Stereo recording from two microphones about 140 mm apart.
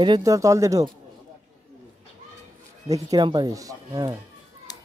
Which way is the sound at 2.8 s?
25° right (ahead or behind).